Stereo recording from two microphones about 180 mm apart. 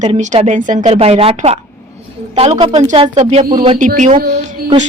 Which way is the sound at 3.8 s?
45° right (ahead or behind).